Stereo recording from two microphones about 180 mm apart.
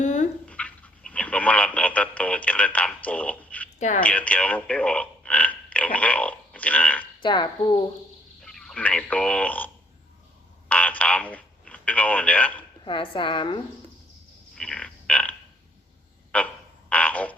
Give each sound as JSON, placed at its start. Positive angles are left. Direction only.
{"t": 0.0, "sound": "dog", "side_deg": 40}
{"t": 0.4, "sound": "telephone", "side_deg": 5}
{"t": 3.8, "sound": "speech", "side_deg": 40}
{"t": 4.0, "sound": "a sound", "side_deg": 5}
{"t": 7.2, "sound": "a woman's voice", "side_deg": 25}
{"t": 8.4, "sound": "speech", "side_deg": 5}
{"t": 10.7, "sound": "telephone", "side_deg": 5}
{"t": 12.8, "sound": "a woman's voice", "side_deg": 25}
{"t": 14.5, "sound": "a sound", "side_deg": 5}
{"t": 16.9, "sound": "frog", "side_deg": 5}